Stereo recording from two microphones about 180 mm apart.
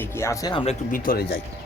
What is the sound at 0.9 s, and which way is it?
Speech, 50° left (ahead or behind).